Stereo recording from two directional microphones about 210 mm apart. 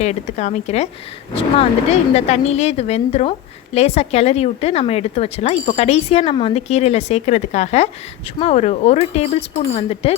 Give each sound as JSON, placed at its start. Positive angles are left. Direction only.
{"t": 0.0, "sound": "speech", "side_deg": 30}